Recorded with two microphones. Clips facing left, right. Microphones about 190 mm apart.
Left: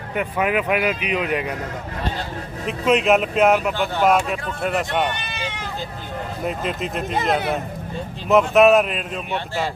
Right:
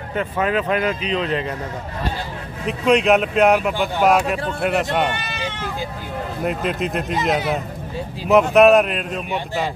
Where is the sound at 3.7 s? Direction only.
15° right (ahead or behind).